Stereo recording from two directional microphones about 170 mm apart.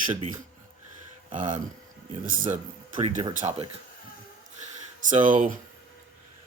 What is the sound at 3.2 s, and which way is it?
Speech, 30° right (ahead or behind).